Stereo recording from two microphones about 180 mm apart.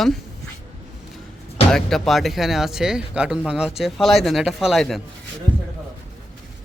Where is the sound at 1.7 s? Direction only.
Centre (ahead or behind).